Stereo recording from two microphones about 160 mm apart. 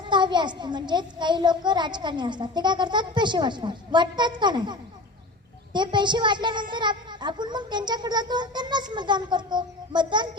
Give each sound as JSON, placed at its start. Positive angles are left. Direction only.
{"t": 0.1, "sound": "a child's voice", "side_deg": -30}